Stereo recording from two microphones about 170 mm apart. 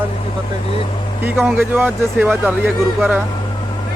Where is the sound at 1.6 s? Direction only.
10° right (ahead or behind).